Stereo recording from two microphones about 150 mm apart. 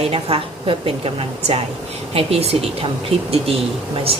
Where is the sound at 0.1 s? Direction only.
40° right (ahead or behind).